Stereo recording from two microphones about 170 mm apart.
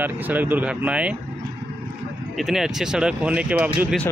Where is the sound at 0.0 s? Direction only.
10° right (ahead or behind).